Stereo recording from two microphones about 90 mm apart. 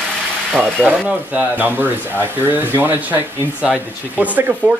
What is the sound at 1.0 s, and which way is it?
Speech, 20° right (ahead or behind).